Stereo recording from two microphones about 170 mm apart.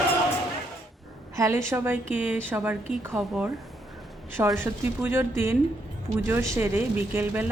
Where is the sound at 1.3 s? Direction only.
20° right (ahead or behind).